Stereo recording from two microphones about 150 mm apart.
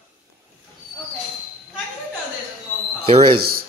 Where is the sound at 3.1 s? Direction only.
40° right (ahead or behind).